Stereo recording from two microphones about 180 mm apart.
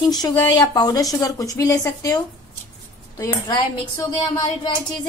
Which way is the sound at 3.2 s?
20° left (ahead or behind).